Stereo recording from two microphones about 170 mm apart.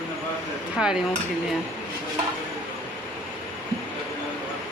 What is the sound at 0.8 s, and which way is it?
Dishes, 5° right (ahead or behind).